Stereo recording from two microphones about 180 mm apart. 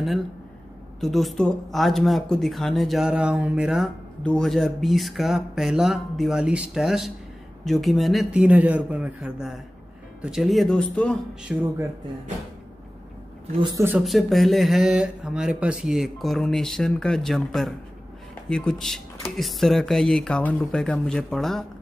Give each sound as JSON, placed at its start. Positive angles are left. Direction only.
{"t": 1.0, "sound": "speech", "side_deg": 0}
{"t": 13.6, "sound": "speech", "side_deg": -25}
{"t": 13.8, "sound": "speech", "side_deg": -5}